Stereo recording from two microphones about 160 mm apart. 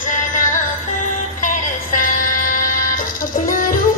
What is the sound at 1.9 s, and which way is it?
Music, 60° left (ahead or behind).